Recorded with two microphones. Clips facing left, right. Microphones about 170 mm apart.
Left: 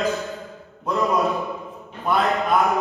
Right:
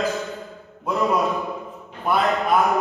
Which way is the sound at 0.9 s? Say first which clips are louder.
Even; centre (ahead or behind).